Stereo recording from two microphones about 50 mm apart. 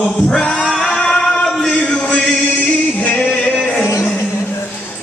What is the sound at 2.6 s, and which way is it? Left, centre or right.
Music, left.